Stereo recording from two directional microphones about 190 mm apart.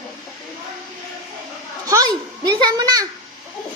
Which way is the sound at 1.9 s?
20° right (ahead or behind).